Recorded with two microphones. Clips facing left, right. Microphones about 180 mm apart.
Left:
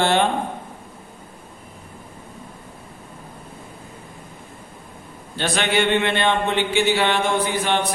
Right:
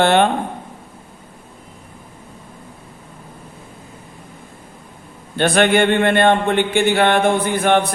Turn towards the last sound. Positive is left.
turn(degrees=-55)  # may be behind; listen again after turning